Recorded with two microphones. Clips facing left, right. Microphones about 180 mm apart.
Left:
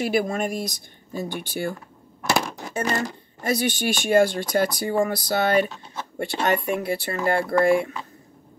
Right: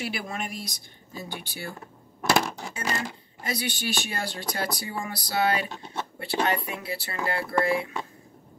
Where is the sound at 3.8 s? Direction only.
50° left (ahead or behind).